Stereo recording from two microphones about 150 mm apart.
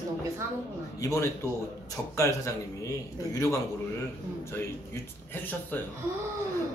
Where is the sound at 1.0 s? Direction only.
20° left (ahead or behind).